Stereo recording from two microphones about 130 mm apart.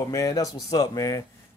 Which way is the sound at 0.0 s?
25° left (ahead or behind).